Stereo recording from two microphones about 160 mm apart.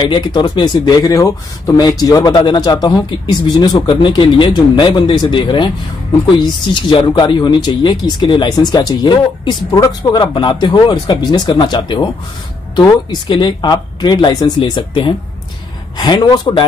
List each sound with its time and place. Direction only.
0.0 s a man's voice: 30° left (ahead or behind)